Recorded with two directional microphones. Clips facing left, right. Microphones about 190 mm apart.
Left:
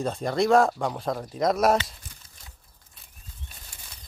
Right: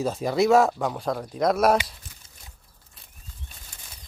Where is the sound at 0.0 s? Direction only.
5° right (ahead or behind).